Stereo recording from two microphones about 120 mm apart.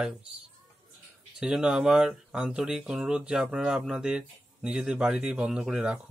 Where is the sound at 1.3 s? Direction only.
5° right (ahead or behind).